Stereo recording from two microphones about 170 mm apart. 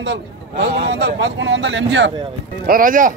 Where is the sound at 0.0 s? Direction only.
90° right.